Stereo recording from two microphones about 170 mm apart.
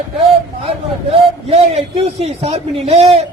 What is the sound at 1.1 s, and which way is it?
A man's voice, 35° right (ahead or behind).